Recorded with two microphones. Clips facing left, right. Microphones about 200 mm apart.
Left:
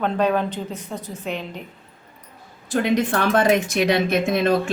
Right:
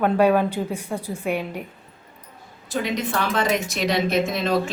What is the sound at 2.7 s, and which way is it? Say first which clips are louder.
Speech: left 5 dB; 55° left (ahead or behind).